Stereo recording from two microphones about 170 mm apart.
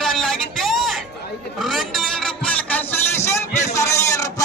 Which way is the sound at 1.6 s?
Centre (ahead or behind).